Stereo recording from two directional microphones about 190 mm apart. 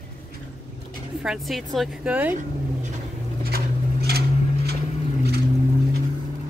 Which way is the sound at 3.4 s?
55° right (ahead or behind).